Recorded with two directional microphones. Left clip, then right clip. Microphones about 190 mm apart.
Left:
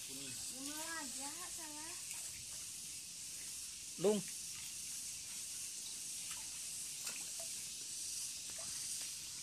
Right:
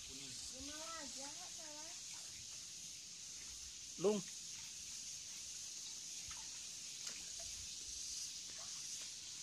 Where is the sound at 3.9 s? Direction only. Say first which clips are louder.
Left 2 dB; 5° right (ahead or behind).